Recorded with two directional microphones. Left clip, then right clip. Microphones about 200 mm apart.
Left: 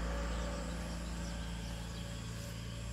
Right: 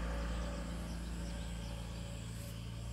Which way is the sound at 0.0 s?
25° right (ahead or behind).